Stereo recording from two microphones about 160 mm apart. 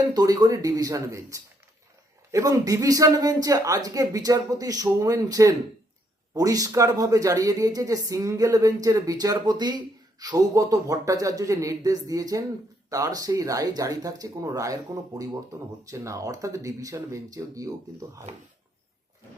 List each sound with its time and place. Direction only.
0.1 s speech: 25° right (ahead or behind)